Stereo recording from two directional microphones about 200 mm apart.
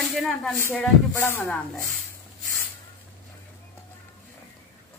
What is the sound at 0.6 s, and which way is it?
Speech, 15° left (ahead or behind).